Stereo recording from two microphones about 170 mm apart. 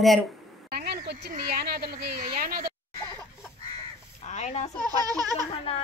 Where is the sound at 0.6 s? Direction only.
70° right (ahead or behind).